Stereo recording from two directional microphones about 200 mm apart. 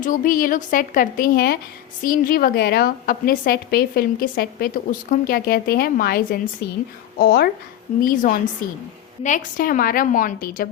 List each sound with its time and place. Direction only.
0.0 s a woman's voice: 40° left (ahead or behind)